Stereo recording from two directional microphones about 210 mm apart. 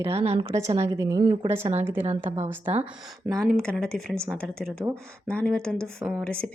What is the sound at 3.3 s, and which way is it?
Speech, 5° left (ahead or behind).